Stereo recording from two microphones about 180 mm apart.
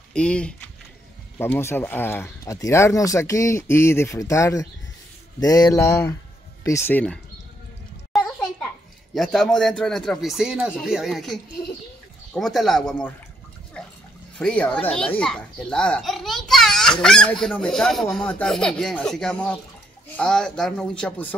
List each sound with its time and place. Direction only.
0.1 s speech: 5° left (ahead or behind)
8.1 s a sound: centre (ahead or behind)
9.1 s a child's voice: centre (ahead or behind)
12.4 s a child's voice: centre (ahead or behind)
14.4 s a child's voice: 5° left (ahead or behind)